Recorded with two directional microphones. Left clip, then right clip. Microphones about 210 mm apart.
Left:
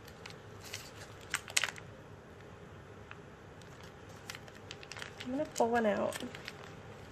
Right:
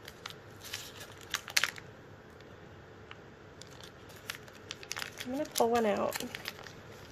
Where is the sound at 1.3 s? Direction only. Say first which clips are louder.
Right 3 dB; 10° right (ahead or behind).